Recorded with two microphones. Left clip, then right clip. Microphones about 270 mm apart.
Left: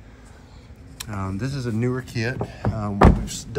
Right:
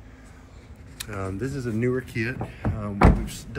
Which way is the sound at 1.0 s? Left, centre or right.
Centre.